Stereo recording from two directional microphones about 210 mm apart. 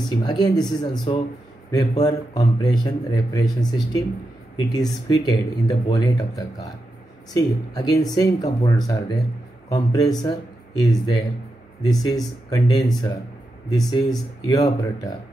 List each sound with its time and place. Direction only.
0.0 s speech: 20° left (ahead or behind)
10.2 s speech: 20° left (ahead or behind)